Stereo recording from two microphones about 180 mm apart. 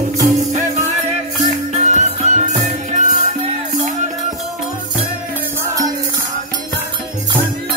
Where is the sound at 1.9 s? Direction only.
40° right (ahead or behind).